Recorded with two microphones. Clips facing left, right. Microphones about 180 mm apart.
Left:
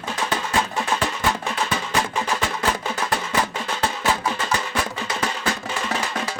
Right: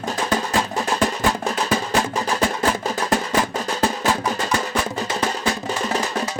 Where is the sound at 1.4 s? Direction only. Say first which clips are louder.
Right 4 dB; 40° right (ahead or behind).